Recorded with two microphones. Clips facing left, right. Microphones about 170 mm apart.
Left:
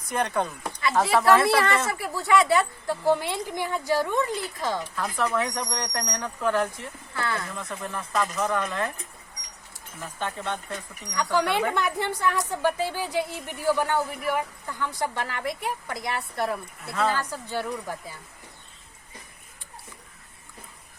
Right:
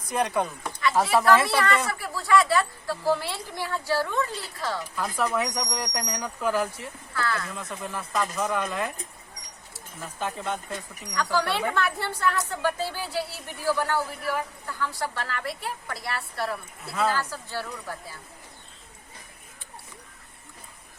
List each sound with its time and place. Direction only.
0.1 s speech: 5° right (ahead or behind)
1.5 s a woman's voice: 25° left (ahead or behind)
5.1 s speech: 10° right (ahead or behind)
7.1 s a woman's voice: 25° left (ahead or behind)
7.5 s speech: centre (ahead or behind)
10.0 s speech: 5° right (ahead or behind)
11.1 s a woman's voice: 20° left (ahead or behind)
16.8 s speech: 5° right (ahead or behind)
17.2 s a woman's voice: 15° left (ahead or behind)